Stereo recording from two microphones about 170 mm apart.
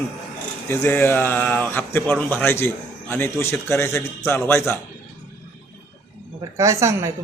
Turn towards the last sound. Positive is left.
turn(degrees=-15)  # may be behind; listen again after turning